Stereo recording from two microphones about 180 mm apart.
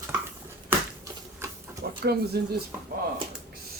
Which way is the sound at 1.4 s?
15° right (ahead or behind).